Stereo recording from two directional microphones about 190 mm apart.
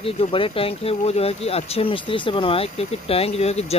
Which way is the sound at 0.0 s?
30° left (ahead or behind).